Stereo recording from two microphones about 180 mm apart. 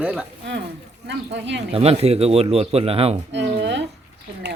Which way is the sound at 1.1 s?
80° right.